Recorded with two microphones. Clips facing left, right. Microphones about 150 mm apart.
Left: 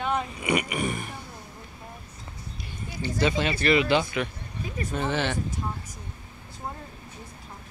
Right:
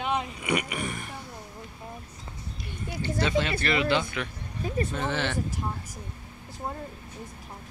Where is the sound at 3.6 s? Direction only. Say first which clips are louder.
Left 3 dB; 15° left (ahead or behind).